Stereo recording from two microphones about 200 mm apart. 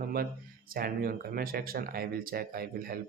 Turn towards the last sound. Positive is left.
turn(degrees=-50)  # may be behind; listen again after turning